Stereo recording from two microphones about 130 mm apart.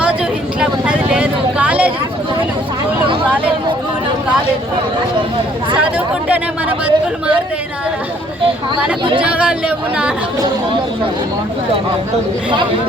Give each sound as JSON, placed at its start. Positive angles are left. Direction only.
{"t": 0.6, "sound": "vehicle", "side_deg": -10}
{"t": 5.7, "sound": "chatter", "side_deg": -10}
{"t": 9.2, "sound": "speech", "side_deg": -10}